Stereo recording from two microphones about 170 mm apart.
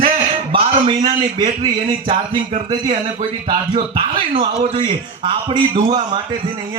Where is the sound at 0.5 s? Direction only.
30° right (ahead or behind).